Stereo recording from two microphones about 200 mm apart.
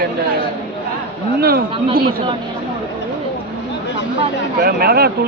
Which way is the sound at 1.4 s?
50° right (ahead or behind).